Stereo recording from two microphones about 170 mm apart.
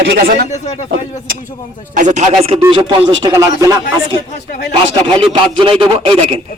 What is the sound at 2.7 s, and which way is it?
Speech, 25° right (ahead or behind).